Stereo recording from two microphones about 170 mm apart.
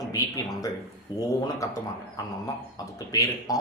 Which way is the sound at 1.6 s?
20° left (ahead or behind).